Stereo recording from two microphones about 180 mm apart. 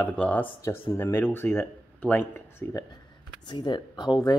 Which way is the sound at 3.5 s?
25° left (ahead or behind).